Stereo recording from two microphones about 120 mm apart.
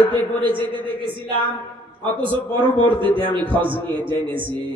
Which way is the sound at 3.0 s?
45° right (ahead or behind).